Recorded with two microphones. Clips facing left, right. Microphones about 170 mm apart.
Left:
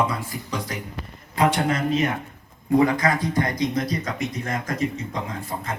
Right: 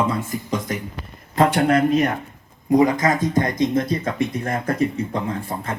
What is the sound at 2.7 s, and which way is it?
Speech, 15° right (ahead or behind).